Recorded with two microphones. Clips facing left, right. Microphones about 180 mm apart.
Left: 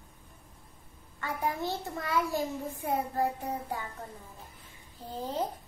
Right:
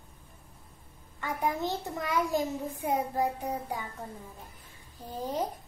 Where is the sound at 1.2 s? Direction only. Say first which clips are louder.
Right 2 dB; 20° right (ahead or behind).